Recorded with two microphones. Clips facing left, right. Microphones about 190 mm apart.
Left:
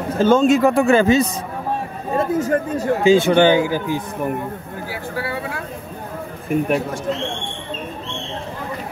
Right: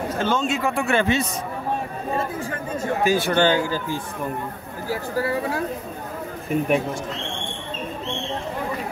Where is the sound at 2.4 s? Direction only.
45° left (ahead or behind).